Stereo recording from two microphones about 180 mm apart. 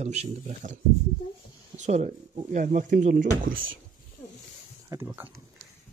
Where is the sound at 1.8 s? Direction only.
40° right (ahead or behind).